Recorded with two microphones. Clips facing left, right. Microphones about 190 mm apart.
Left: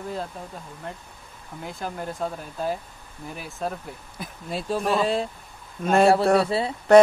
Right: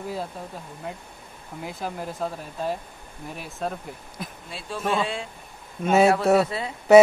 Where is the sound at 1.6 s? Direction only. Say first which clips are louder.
Even; centre (ahead or behind).